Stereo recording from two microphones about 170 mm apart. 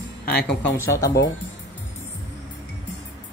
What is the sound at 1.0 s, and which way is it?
Speech, 75° left (ahead or behind).